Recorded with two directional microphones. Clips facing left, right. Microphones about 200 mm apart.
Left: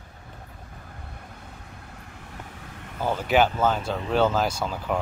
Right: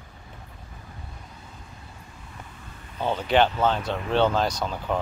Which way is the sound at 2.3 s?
80° left.